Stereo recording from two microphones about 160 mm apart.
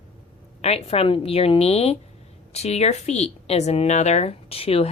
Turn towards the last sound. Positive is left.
turn(degrees=35)  # may be behind; listen again after turning